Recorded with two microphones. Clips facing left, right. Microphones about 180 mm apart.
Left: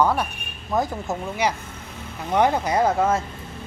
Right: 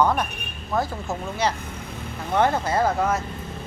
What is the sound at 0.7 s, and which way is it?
Speech, 20° left (ahead or behind).